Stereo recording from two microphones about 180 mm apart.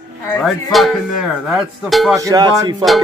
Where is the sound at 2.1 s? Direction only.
20° right (ahead or behind).